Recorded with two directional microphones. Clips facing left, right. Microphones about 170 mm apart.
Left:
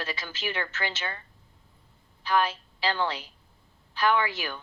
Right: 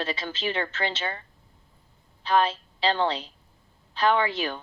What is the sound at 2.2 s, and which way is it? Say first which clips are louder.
A woman's voice: right 3 dB; 25° right (ahead or behind).